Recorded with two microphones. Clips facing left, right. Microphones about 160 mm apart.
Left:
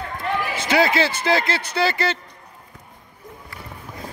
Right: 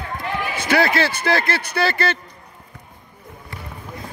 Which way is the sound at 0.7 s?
20° left (ahead or behind).